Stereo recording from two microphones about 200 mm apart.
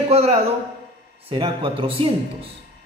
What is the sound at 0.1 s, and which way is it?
A man's voice, 30° right (ahead or behind).